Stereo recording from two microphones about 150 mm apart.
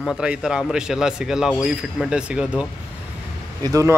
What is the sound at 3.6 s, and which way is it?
Speech, 20° right (ahead or behind).